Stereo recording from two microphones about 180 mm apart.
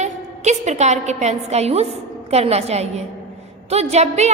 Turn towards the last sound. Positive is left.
turn(degrees=-40)  # may be behind; listen again after turning